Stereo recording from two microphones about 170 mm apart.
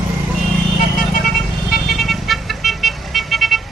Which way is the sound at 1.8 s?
Centre (ahead or behind).